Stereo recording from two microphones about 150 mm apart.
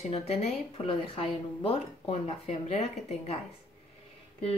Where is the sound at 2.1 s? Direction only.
45° left (ahead or behind).